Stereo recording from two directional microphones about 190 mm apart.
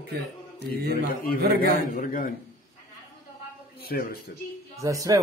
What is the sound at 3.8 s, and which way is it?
Speech, 55° left (ahead or behind).